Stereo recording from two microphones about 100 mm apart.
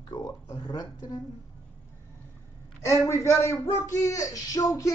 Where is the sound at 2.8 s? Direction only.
30° left (ahead or behind).